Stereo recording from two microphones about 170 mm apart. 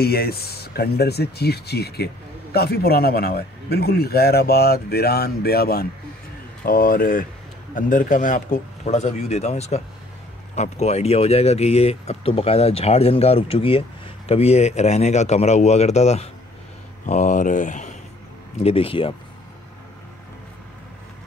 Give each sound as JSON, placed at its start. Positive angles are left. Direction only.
{"t": 0.0, "sound": "a man's voice", "side_deg": 65}
{"t": 18.6, "sound": "speech", "side_deg": 35}